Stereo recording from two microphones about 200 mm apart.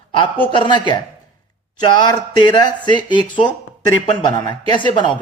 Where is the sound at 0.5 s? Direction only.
25° left (ahead or behind).